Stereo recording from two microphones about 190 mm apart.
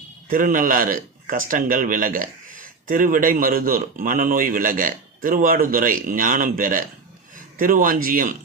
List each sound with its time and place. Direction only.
0.3 s speech: 45° right (ahead or behind)